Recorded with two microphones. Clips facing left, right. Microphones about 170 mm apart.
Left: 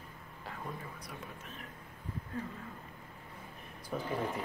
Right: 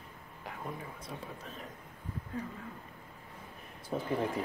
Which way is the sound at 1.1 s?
35° right (ahead or behind).